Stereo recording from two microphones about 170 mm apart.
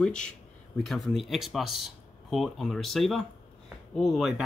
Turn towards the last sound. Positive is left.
turn(degrees=0)  # may be behind; listen again after turning